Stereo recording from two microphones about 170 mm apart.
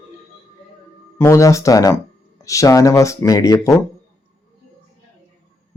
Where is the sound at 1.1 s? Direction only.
15° left (ahead or behind).